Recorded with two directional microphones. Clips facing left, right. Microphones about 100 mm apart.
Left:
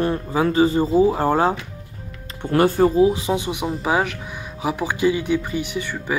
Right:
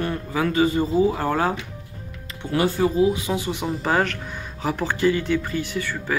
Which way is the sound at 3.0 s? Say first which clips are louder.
Left 3 dB; 30° left (ahead or behind).